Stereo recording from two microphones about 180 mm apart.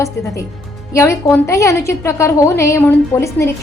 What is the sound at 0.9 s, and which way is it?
A woman's voice, 15° left (ahead or behind).